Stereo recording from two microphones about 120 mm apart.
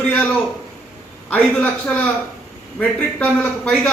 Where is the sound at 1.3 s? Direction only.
10° left (ahead or behind).